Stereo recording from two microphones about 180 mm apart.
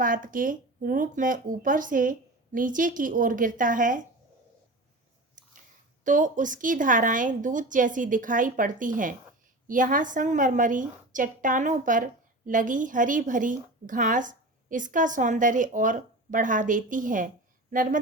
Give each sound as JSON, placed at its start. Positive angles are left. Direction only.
{"t": 0.0, "sound": "a woman's voice", "side_deg": -50}
{"t": 6.1, "sound": "a woman's voice", "side_deg": -45}